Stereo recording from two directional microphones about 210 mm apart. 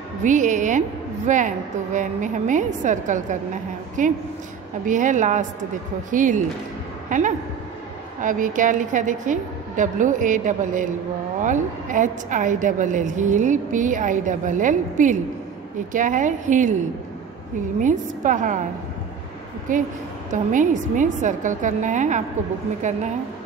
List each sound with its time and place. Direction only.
0.2 s a woman's voice: 35° right (ahead or behind)
17.7 s a woman's voice: 35° right (ahead or behind)
19.7 s a woman's voice: 40° right (ahead or behind)